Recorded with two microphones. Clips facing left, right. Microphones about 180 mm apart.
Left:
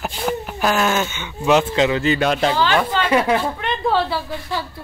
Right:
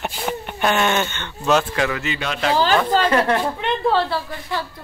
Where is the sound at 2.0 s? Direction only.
40° left (ahead or behind).